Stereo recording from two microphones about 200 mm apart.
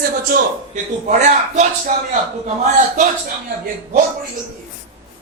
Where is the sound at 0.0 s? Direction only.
45° right (ahead or behind).